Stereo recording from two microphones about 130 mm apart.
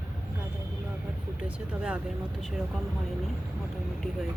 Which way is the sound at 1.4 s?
5° right (ahead or behind).